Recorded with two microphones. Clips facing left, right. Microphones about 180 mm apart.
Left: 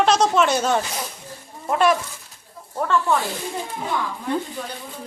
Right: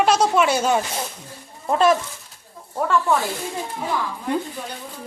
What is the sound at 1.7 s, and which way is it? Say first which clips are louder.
Speech: right 1 dB; 25° right (ahead or behind).